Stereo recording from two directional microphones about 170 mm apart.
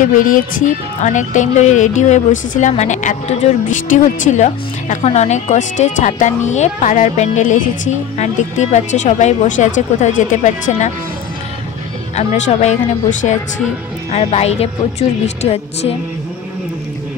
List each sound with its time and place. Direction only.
0.0 s speech: 50° left (ahead or behind)
12.2 s speech: 40° left (ahead or behind)